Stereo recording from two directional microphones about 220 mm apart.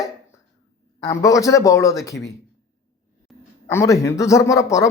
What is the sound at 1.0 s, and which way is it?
Speech, 15° left (ahead or behind).